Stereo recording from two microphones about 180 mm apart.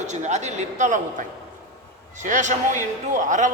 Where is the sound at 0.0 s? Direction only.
40° right (ahead or behind).